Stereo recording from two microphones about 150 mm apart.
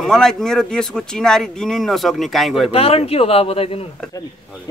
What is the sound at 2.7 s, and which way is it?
Speech, 40° left (ahead or behind).